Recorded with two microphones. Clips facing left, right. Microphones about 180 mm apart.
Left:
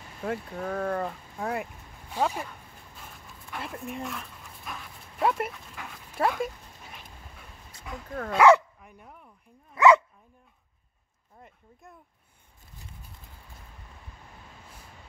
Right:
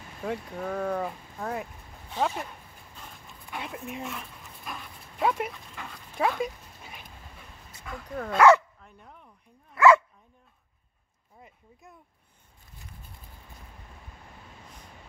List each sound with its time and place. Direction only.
0.2 s speech: centre (ahead or behind)
1.4 s speech: 5° left (ahead or behind)
3.5 s dog: centre (ahead or behind)
8.3 s speech: 10° left (ahead or behind)
9.8 s dog: 20° left (ahead or behind)
11.4 s speech: centre (ahead or behind)